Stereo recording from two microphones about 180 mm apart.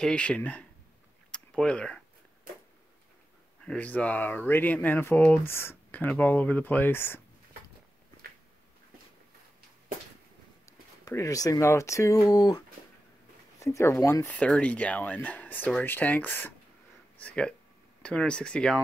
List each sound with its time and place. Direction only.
0.0 s speech: 5° left (ahead or behind)
1.3 s a sound: 5° left (ahead or behind)
3.6 s speech: 5° left (ahead or behind)
11.1 s speech: 20° left (ahead or behind)